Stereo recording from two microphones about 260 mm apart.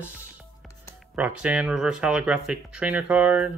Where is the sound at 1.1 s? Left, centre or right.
Centre.